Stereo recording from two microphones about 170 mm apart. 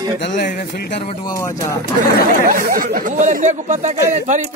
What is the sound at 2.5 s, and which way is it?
Speech, 55° right (ahead or behind).